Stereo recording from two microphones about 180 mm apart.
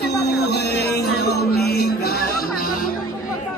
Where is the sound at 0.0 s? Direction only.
70° left (ahead or behind).